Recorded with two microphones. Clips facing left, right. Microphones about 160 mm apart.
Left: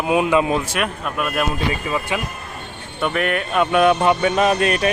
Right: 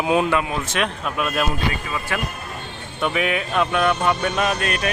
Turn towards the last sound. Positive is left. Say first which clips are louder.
# left 5 dB
turn(degrees=5)  # may be behind; listen again after turning